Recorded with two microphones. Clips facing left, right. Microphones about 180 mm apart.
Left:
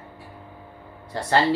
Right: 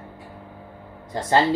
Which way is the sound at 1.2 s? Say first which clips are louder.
Right 2 dB; 20° right (ahead or behind).